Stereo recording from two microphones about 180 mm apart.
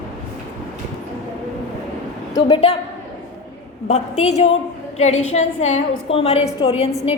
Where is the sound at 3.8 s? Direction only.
40° left (ahead or behind).